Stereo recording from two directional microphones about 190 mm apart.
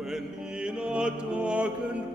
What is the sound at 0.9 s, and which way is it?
Music, 5° right (ahead or behind).